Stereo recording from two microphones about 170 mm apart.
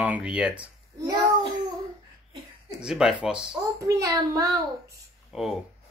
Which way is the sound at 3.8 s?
20° right (ahead or behind).